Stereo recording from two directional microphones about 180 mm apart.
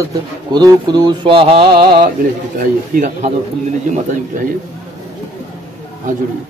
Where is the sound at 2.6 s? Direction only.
40° right (ahead or behind).